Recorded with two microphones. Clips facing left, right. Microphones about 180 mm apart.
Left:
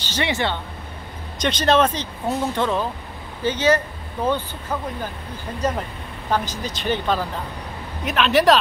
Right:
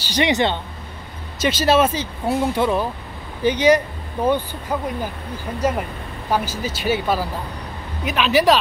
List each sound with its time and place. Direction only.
0.0 s speech: 15° right (ahead or behind)
1.4 s speech: 5° right (ahead or behind)